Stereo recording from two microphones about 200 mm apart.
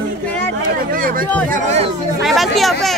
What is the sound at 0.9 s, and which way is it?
Speech, 45° right (ahead or behind).